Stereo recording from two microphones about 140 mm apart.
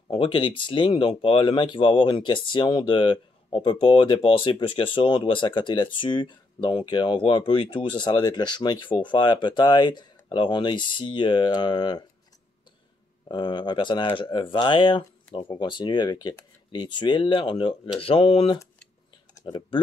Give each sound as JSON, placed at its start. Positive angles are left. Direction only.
{"t": 0.1, "sound": "speech", "side_deg": 40}
{"t": 13.3, "sound": "speech", "side_deg": 30}